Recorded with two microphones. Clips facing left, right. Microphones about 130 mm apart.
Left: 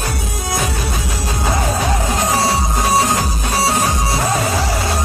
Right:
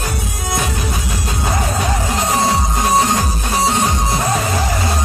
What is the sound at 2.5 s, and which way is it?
Music, 5° left (ahead or behind).